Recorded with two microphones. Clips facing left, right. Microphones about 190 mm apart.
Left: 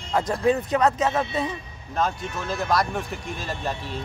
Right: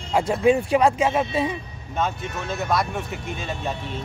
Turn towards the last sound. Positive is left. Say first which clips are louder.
# right 1 dB
turn(degrees=0)  # may be behind; listen again after turning